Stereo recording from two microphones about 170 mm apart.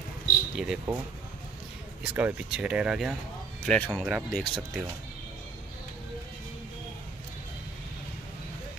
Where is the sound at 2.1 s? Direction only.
10° right (ahead or behind).